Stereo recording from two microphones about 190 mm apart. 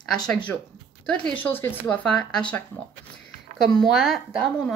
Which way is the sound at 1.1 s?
10° left (ahead or behind).